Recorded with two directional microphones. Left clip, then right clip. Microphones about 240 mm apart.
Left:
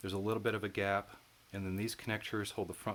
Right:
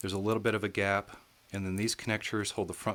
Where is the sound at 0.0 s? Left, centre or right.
Right.